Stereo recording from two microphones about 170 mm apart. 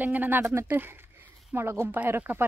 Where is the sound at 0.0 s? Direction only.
10° right (ahead or behind).